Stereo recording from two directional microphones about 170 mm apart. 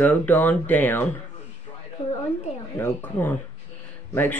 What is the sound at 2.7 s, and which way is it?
Speech, 10° left (ahead or behind).